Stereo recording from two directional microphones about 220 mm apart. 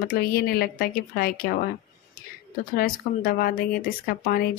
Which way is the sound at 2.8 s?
40° left (ahead or behind).